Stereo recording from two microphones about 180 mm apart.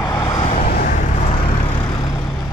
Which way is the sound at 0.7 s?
60° left (ahead or behind).